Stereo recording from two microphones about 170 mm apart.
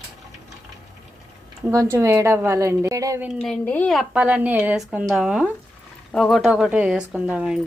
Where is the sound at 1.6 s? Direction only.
20° right (ahead or behind).